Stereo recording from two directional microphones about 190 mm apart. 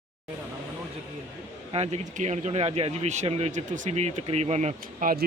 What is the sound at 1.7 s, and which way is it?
Speech, 35° right (ahead or behind).